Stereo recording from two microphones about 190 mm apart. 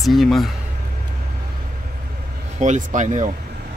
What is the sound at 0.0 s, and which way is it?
Speech, centre (ahead or behind).